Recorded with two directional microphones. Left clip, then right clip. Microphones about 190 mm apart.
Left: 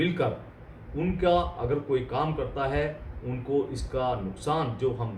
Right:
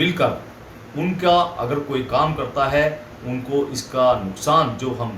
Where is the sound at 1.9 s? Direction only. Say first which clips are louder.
Right 11 dB; 20° left (ahead or behind).